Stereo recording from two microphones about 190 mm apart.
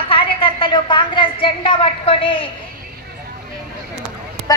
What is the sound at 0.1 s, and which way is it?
A woman's voice, 30° left (ahead or behind).